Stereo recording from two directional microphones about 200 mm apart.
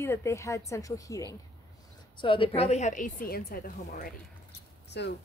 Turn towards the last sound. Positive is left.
turn(degrees=60)  # may be behind; listen again after turning